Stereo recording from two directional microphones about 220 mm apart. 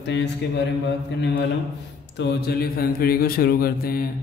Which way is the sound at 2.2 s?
45° left (ahead or behind).